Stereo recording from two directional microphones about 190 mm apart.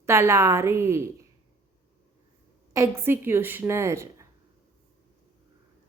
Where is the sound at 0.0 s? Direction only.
15° right (ahead or behind).